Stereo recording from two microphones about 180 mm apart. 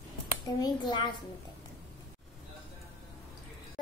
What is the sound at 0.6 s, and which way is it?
Speech, 25° left (ahead or behind).